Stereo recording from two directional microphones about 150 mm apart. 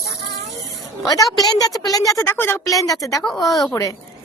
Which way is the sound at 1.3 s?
25° left (ahead or behind).